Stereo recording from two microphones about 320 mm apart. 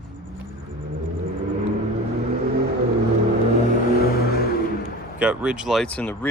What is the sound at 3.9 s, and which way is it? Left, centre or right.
Vehicle, left.